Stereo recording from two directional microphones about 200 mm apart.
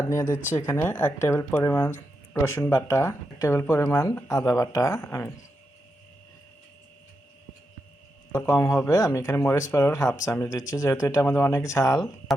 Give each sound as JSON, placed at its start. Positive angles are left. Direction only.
{"t": 0.1, "sound": "speech", "side_deg": 15}
{"t": 8.3, "sound": "speech", "side_deg": 15}